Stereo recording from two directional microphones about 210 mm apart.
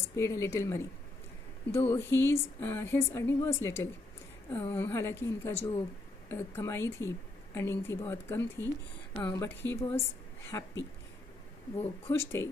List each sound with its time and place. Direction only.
0.1 s a woman's voice: 15° left (ahead or behind)
9.8 s a woman's voice: 30° left (ahead or behind)
10.4 s a woman's voice: 15° left (ahead or behind)
12.1 s a woman's voice: 10° left (ahead or behind)